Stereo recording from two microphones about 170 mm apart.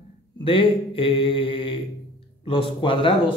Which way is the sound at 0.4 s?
30° left (ahead or behind).